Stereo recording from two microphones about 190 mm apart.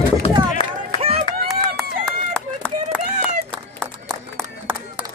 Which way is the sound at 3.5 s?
5° left (ahead or behind).